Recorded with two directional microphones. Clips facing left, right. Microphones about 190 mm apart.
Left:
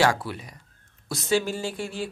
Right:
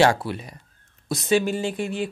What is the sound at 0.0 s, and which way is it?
Speech, 25° right (ahead or behind).